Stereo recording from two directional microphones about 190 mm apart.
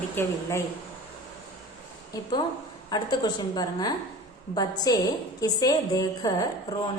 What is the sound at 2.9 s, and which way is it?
A woman's voice, 20° left (ahead or behind).